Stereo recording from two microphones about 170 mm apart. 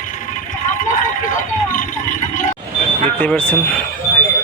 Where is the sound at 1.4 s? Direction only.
50° left (ahead or behind).